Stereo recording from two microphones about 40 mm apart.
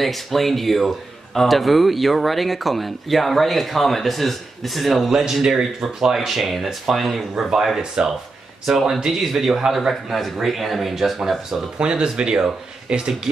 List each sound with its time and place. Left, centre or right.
0.0 s speech: centre
5.1 s speech: centre
11.8 s speech: right